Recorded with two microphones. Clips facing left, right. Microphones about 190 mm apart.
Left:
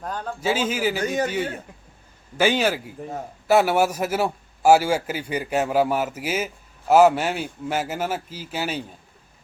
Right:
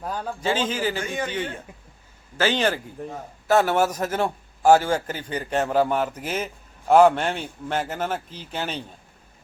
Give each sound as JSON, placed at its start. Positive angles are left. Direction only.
{"t": 0.0, "sound": "a man's voice", "side_deg": -5}
{"t": 0.4, "sound": "a man's voice", "side_deg": 10}
{"t": 1.0, "sound": "speech", "side_deg": 40}
{"t": 2.4, "sound": "a man's voice", "side_deg": 10}